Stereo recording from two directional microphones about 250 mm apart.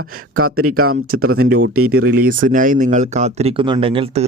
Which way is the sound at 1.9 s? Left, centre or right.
Right.